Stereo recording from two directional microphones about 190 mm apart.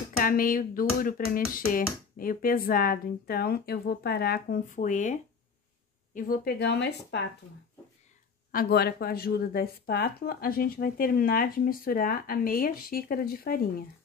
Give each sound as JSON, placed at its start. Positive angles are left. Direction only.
{"t": 0.2, "sound": "speech", "side_deg": 45}
{"t": 8.5, "sound": "speech", "side_deg": 50}